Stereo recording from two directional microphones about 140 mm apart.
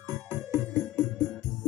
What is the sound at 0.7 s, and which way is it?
Music, 15° left (ahead or behind).